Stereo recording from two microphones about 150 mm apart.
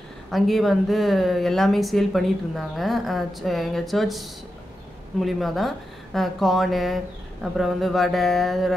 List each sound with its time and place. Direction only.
0.3 s speech: centre (ahead or behind)